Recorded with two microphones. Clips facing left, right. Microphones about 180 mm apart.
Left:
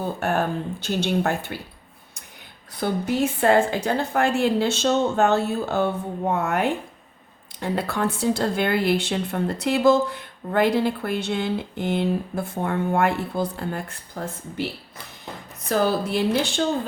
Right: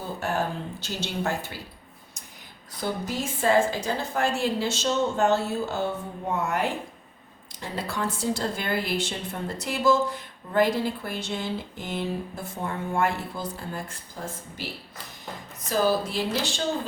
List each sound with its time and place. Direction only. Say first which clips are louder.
0.0 s a woman's voice: left 5 dB; 60° left (ahead or behind)
2.8 s a woman's voice: left 7 dB; 60° left (ahead or behind)
15.7 s a woman's voice: left 2 dB; 60° left (ahead or behind)